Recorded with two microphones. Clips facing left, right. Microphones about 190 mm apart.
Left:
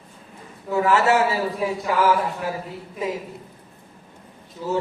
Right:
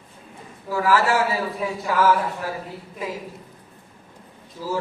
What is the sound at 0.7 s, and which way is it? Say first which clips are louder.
Speech: left 2 dB; 25° left (ahead or behind).